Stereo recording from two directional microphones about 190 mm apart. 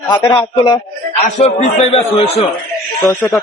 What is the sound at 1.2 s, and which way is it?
Speech, 35° left (ahead or behind).